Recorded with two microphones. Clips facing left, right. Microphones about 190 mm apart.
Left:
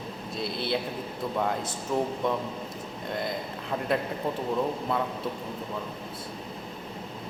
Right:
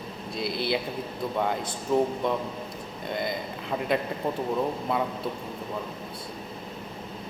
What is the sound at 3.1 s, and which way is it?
Speech, centre (ahead or behind).